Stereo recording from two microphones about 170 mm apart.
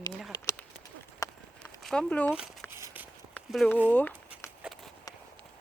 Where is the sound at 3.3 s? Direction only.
Centre (ahead or behind).